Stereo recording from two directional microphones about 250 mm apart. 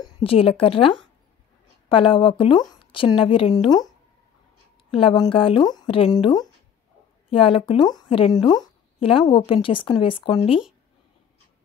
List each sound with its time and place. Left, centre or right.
0.0 s a woman's voice: left
4.9 s speech: centre